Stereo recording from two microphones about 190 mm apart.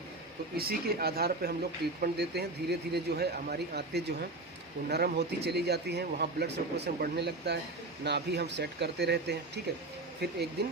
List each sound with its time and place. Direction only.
0.5 s speech: 55° right (ahead or behind)